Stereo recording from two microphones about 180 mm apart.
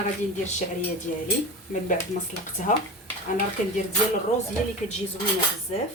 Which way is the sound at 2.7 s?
45° left (ahead or behind).